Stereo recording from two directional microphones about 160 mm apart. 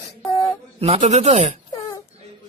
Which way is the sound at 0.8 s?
40° right (ahead or behind).